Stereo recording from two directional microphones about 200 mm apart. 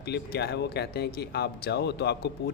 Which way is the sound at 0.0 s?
55° left (ahead or behind).